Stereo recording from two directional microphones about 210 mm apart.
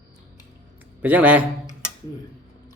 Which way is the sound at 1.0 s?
10° right (ahead or behind).